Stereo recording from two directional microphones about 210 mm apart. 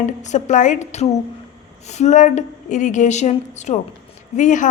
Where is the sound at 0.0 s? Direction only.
35° left (ahead or behind).